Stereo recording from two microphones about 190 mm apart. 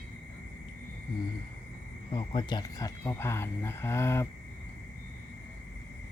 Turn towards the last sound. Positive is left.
turn(degrees=15)  # may be behind; listen again after turning